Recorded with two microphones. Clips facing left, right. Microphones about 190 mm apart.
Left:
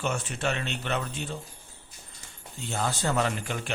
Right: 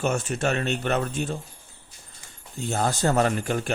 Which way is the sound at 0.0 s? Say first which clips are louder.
Right 5 dB; 45° right (ahead or behind).